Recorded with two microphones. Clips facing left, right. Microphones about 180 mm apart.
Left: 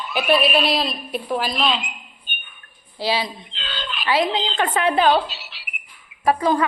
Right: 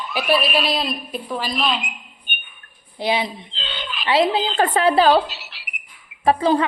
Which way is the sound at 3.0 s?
20° right (ahead or behind).